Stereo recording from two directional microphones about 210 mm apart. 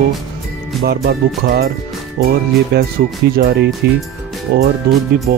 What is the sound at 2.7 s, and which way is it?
Speech, 50° right (ahead or behind).